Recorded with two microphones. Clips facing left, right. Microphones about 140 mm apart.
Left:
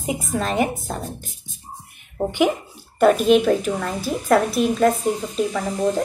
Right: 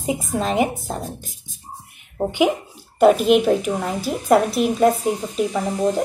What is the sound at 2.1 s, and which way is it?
Speech, 15° right (ahead or behind).